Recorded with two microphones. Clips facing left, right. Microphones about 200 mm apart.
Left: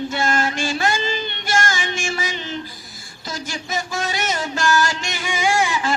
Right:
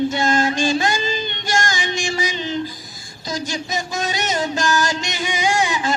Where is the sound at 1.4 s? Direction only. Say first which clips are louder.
Even; 15° right (ahead or behind).